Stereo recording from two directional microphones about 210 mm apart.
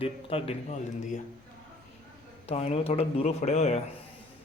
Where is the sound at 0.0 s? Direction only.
25° left (ahead or behind).